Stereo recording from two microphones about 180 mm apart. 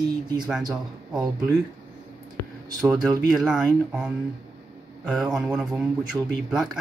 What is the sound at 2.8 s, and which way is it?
Speech, centre (ahead or behind).